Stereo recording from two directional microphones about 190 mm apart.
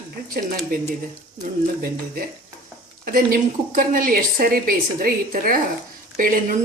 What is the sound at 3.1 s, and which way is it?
Speech, 45° right (ahead or behind).